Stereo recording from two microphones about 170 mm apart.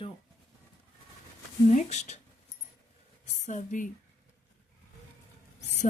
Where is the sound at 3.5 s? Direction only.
50° left (ahead or behind).